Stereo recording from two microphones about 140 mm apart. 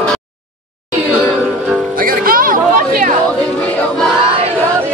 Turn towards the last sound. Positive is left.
turn(degrees=-80)